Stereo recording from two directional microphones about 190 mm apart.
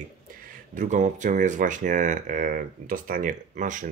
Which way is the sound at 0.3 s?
45° right (ahead or behind).